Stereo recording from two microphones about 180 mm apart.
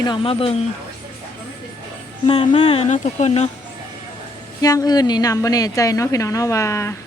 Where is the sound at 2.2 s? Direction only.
25° left (ahead or behind).